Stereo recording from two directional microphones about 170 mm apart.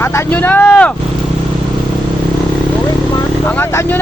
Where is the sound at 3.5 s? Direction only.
10° left (ahead or behind).